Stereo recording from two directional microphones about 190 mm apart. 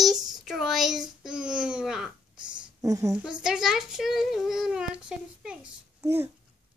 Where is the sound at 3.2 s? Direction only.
5° right (ahead or behind).